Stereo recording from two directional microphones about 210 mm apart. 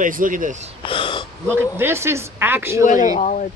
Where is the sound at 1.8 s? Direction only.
10° right (ahead or behind).